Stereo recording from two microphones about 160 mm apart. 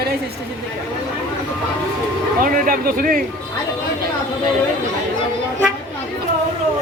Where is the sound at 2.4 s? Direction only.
60° right (ahead or behind).